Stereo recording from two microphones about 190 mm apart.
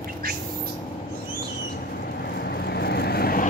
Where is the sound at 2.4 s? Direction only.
60° left (ahead or behind).